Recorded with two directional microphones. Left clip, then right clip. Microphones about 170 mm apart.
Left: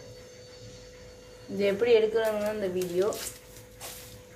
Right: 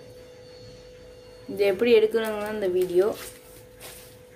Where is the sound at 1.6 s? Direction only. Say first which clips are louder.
Right 4 dB; 70° right (ahead or behind).